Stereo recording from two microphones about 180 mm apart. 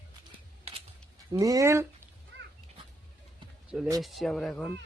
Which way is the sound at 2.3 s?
80° right.